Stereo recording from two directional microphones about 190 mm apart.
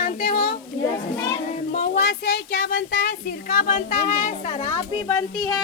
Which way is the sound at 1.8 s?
60° left (ahead or behind).